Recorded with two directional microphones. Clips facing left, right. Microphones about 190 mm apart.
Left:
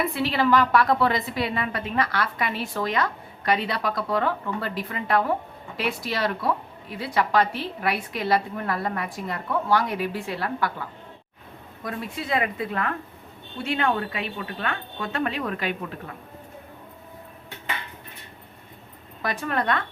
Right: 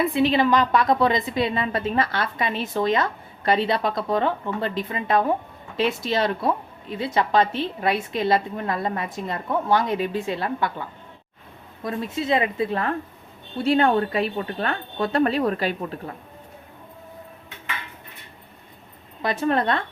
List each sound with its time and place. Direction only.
0.0 s a woman's voice: 20° right (ahead or behind)
11.8 s a woman's voice: 25° right (ahead or behind)
19.2 s a woman's voice: 25° right (ahead or behind)